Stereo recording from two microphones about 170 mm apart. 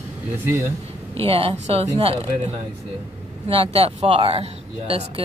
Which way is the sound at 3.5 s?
35° right (ahead or behind).